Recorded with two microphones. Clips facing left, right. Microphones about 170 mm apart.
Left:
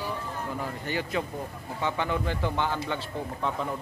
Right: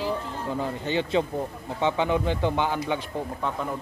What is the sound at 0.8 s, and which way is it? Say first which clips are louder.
Speech: right 6 dB; 25° right (ahead or behind).